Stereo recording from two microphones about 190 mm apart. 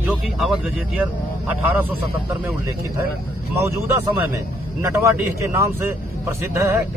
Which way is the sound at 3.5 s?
15° right (ahead or behind).